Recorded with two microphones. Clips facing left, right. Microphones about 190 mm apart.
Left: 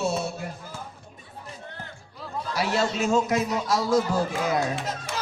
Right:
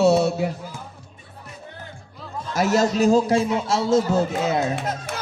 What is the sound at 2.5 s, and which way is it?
A man's voice, 45° right (ahead or behind).